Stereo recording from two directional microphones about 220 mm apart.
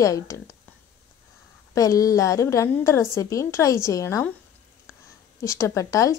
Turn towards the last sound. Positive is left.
turn(degrees=15)  # may be behind; listen again after turning